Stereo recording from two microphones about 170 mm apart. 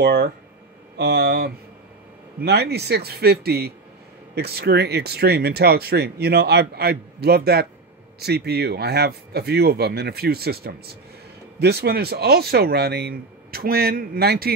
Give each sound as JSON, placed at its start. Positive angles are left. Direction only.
{"t": 0.0, "sound": "speech", "side_deg": -70}